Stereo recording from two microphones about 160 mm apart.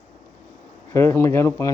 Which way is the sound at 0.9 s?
15° left (ahead or behind).